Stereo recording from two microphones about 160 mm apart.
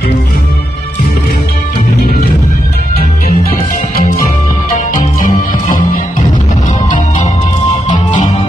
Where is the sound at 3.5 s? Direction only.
60° left (ahead or behind).